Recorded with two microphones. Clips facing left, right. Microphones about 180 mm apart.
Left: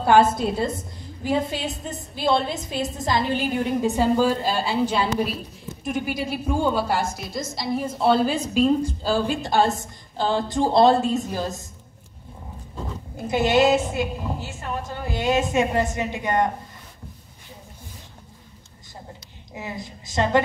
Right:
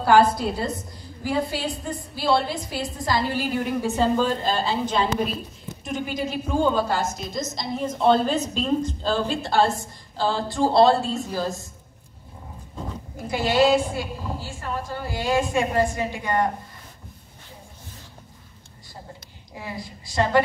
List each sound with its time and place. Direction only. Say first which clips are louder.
0.0 s a woman's voice: even; 25° left (ahead or behind); by 5.3 s 10° left (ahead or behind)
6.7 s a woman's voice: even; 10° left (ahead or behind)
13.3 s a woman's voice: left 1 dB; 20° left (ahead or behind)
19.5 s a woman's voice: left 1 dB; 20° left (ahead or behind)